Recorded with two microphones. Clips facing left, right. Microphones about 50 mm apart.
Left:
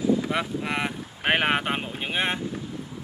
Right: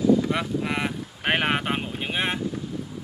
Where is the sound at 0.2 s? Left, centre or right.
Centre.